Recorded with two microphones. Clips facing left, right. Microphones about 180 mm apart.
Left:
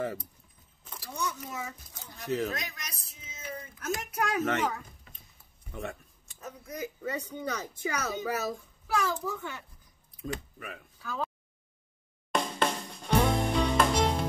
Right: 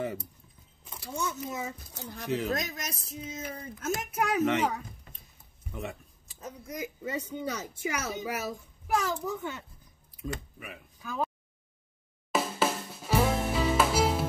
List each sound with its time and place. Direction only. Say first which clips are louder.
0.9 s a child's voice: right 1 dB; 20° right (ahead or behind)
2.2 s speech: even; centre (ahead or behind)
2.5 s speech: right 6 dB; 45° right (ahead or behind)
3.8 s a child's voice: right 2 dB; 20° right (ahead or behind)
4.5 s speech: right 2 dB; centre (ahead or behind)
6.4 s a child's voice: even; 10° right (ahead or behind)
10.2 s speech: left 1 dB; 5° right (ahead or behind)
11.0 s a sound: right 2 dB; 15° right (ahead or behind)
12.3 s music: right 1 dB; 5° right (ahead or behind)